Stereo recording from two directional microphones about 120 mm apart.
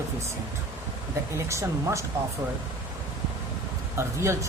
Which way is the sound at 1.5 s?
25° right (ahead or behind).